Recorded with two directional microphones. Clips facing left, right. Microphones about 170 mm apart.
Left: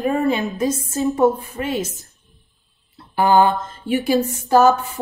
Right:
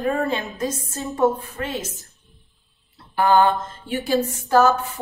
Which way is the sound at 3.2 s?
10° left (ahead or behind).